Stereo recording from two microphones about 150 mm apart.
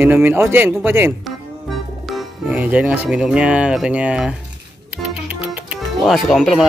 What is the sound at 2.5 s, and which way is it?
Speech, 10° right (ahead or behind).